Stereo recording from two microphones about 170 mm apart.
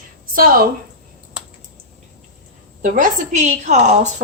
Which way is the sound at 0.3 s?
60° right (ahead or behind).